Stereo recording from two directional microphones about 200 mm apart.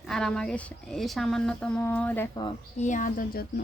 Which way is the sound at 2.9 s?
40° left (ahead or behind).